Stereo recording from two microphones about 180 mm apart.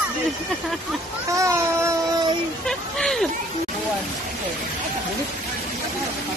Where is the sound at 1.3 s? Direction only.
15° right (ahead or behind).